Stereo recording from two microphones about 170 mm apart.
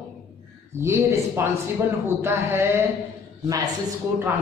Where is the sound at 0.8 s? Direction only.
15° right (ahead or behind).